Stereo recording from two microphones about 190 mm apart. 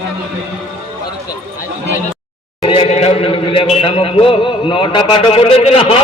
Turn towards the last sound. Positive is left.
turn(degrees=30)  # may be behind; listen again after turning